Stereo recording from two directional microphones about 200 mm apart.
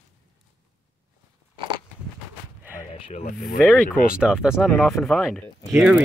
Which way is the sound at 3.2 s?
45° left (ahead or behind).